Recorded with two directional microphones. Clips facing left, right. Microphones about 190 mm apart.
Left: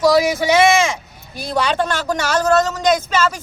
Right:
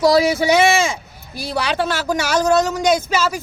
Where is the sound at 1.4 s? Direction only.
5° right (ahead or behind).